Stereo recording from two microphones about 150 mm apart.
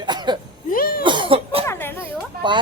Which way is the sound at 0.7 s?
85° left.